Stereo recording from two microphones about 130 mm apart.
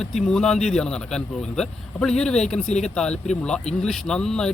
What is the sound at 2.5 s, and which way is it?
Speech, 60° left (ahead or behind).